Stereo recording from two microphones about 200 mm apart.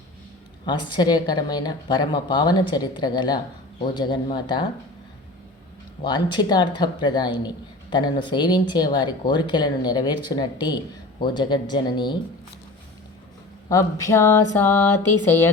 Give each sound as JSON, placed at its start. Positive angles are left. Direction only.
{"t": 0.6, "sound": "speech", "side_deg": 20}
{"t": 6.0, "sound": "speech", "side_deg": 20}
{"t": 13.7, "sound": "a sound", "side_deg": 15}